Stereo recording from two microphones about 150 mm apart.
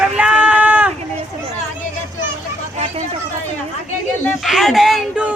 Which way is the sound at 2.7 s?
45° right (ahead or behind).